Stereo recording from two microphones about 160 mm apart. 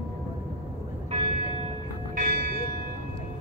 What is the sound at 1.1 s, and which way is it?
Church bell, 35° right (ahead or behind).